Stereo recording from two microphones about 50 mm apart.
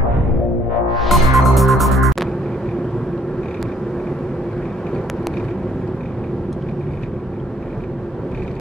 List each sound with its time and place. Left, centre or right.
0.9 s music: centre